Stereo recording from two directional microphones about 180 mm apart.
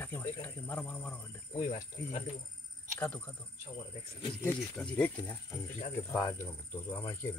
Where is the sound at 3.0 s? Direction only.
10° left (ahead or behind).